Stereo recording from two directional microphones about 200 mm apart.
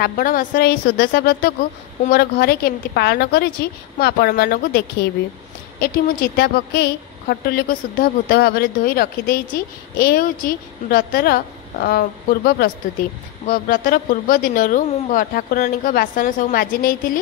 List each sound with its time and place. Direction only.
0.0 s speech: 45° left (ahead or behind)